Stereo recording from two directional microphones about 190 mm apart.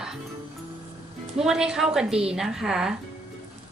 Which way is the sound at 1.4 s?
Centre (ahead or behind).